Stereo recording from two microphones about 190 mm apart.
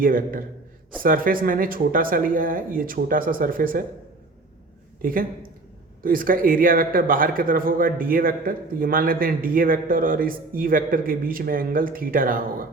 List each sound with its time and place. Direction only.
0.0 s a man's voice: 45° right (ahead or behind)
5.0 s a man's voice: 50° right (ahead or behind)